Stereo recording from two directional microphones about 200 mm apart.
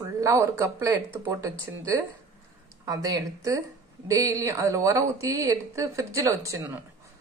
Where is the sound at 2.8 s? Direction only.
15° right (ahead or behind).